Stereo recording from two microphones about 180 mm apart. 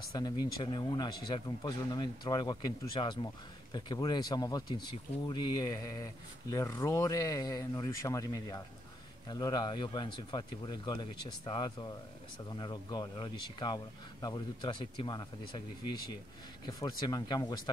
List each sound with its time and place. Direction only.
0.1 s speech: 25° left (ahead or behind)
16.6 s speech: 20° left (ahead or behind)